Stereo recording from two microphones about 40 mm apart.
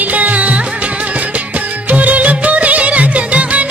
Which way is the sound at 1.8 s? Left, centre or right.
Right.